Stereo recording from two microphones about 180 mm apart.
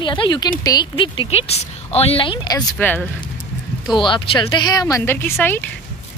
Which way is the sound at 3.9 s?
25° left (ahead or behind).